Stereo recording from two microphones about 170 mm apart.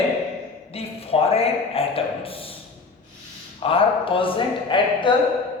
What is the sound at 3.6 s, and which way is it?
A man's voice, 35° left (ahead or behind).